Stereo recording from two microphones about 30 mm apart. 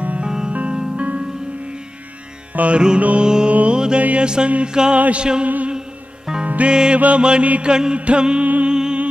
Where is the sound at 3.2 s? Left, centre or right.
Right.